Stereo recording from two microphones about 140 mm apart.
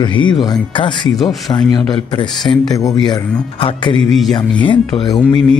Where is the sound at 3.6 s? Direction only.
35° left (ahead or behind).